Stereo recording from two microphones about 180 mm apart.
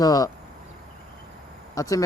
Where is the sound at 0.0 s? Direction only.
20° left (ahead or behind).